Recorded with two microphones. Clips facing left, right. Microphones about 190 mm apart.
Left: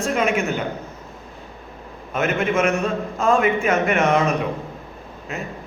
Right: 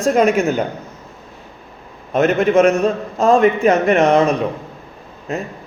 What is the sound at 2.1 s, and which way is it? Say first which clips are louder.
A man's voice: right 7 dB; 35° right (ahead or behind).